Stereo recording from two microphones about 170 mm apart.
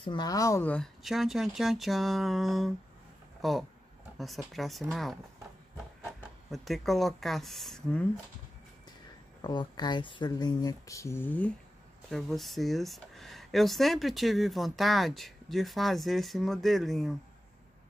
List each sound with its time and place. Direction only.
0.0 s speech: 25° left (ahead or behind); by 8.1 s 5° left (ahead or behind)
9.4 s speech: 25° left (ahead or behind); by 17.1 s centre (ahead or behind)